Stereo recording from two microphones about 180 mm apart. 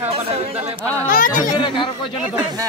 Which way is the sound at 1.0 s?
50° left (ahead or behind).